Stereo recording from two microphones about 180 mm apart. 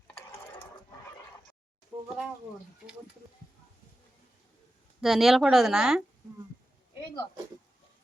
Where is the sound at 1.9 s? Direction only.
15° right (ahead or behind).